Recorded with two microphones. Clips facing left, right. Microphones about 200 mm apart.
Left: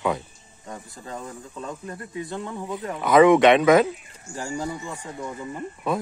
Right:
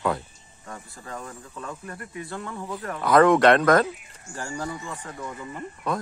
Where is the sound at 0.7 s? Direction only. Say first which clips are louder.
Left 2 dB; 20° left (ahead or behind).